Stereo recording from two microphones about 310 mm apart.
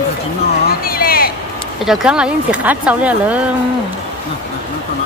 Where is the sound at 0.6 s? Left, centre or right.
Left.